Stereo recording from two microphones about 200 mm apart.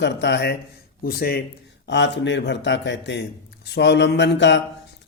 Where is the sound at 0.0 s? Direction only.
60° left (ahead or behind).